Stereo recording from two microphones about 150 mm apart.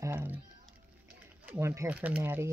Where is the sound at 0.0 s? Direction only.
15° right (ahead or behind).